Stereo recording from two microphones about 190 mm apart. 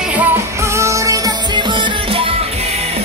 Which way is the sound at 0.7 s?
15° right (ahead or behind).